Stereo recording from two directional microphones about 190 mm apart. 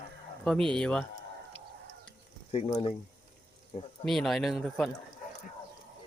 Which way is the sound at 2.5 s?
30° left (ahead or behind).